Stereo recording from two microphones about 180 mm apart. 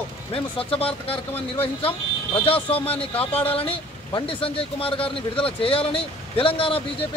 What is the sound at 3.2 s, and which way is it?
Speech, 10° left (ahead or behind).